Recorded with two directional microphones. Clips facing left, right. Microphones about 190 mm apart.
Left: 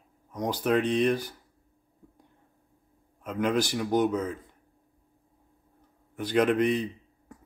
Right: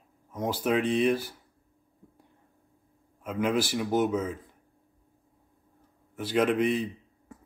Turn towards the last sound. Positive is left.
turn(degrees=-5)  # may be behind; listen again after turning